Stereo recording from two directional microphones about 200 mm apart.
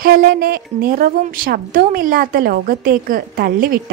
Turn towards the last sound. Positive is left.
turn(degrees=-45)  # may be behind; listen again after turning